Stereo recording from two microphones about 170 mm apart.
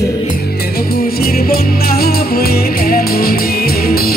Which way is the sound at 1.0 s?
60° left (ahead or behind).